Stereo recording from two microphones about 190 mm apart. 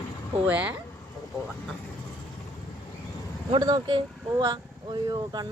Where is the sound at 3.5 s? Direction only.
20° right (ahead or behind).